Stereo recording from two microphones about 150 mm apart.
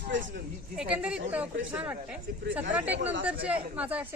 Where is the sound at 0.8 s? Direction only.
5° right (ahead or behind).